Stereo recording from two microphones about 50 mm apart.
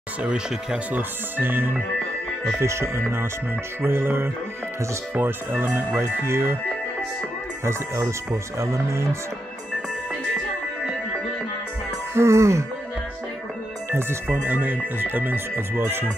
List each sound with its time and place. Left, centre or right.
0.2 s speech: centre
0.9 s speech: right
2.6 s speech: right
5.6 s speech: right
7.6 s speech: right
12.1 s speech: right
13.8 s speech: right